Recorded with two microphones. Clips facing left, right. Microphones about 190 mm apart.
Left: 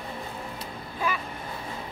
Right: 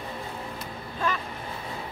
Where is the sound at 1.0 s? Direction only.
10° left (ahead or behind).